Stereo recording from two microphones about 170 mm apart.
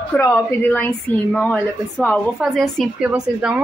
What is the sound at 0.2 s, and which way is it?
A woman's voice, 10° left (ahead or behind).